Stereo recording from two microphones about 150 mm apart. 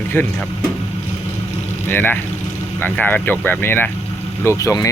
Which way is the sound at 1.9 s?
15° left (ahead or behind).